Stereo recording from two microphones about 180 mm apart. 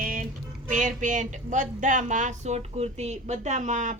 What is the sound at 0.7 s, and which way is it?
A woman's voice, 45° right (ahead or behind).